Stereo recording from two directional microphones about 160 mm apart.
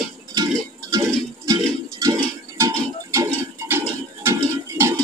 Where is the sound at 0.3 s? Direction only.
25° right (ahead or behind).